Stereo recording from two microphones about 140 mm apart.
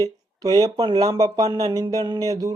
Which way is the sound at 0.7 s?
35° right (ahead or behind).